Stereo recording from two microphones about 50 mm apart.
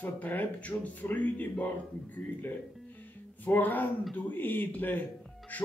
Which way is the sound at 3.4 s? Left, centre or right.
Left.